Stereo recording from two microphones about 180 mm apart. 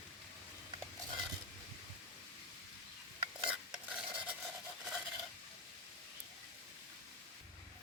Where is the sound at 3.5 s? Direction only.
5° right (ahead or behind).